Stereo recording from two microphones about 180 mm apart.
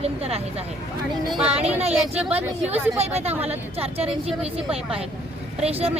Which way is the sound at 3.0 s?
35° right (ahead or behind).